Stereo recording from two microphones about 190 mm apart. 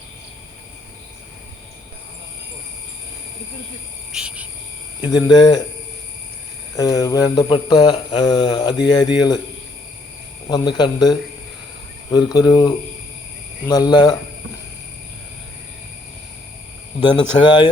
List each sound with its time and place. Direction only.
4.1 s insect: 5° right (ahead or behind)
5.0 s speech: 20° left (ahead or behind)
6.7 s speech: 20° left (ahead or behind)
10.5 s speech: 20° left (ahead or behind)
17.0 s speech: 25° left (ahead or behind)